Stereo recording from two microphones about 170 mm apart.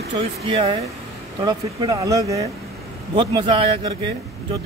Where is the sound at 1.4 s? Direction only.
25° right (ahead or behind).